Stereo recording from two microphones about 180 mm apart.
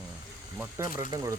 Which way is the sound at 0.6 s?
20° right (ahead or behind).